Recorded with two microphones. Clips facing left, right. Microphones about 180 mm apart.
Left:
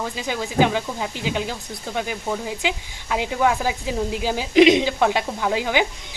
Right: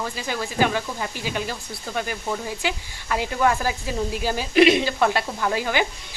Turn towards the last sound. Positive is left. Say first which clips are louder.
# left 2 dB
turn(degrees=15)  # may be behind; listen again after turning